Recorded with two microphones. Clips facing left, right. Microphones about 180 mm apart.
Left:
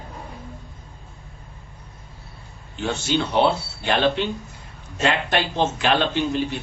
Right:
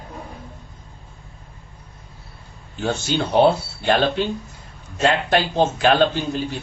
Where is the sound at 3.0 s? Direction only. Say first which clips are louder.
Right 3 dB; 40° right (ahead or behind).